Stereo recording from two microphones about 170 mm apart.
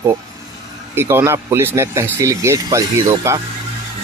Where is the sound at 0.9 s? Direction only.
15° right (ahead or behind).